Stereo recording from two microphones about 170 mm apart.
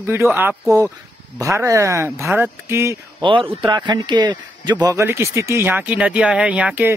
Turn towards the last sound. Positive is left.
turn(degrees=-10)  # may be behind; listen again after turning